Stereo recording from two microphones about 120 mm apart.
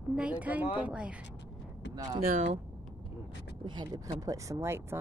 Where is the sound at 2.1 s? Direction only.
60° right (ahead or behind).